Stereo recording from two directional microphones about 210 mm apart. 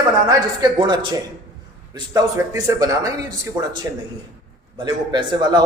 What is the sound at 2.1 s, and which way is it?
A man's voice, 15° right (ahead or behind).